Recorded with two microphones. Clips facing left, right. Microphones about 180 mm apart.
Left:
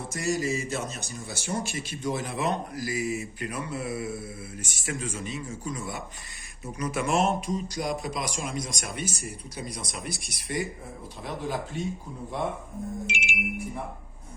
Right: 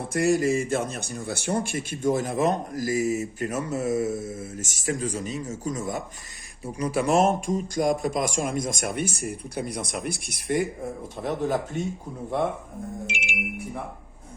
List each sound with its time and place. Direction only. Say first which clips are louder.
0.1 s speech: right 7 dB; 60° right (ahead or behind)
6.7 s speech: right 4 dB; 30° right (ahead or behind); by 12.5 s 60° right (ahead or behind)